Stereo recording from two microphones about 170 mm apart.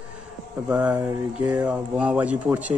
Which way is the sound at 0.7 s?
10° right (ahead or behind).